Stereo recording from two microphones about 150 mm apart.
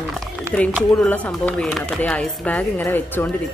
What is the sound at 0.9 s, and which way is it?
Speech, 10° left (ahead or behind).